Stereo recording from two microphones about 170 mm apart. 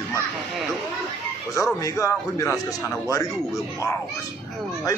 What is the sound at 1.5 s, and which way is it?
A man's voice, 20° left (ahead or behind).